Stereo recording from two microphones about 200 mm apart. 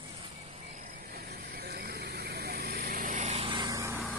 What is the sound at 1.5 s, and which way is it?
Vehicle, 50° right (ahead or behind).